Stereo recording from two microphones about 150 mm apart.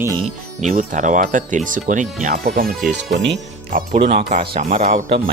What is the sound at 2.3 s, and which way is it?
Speech, 90° right.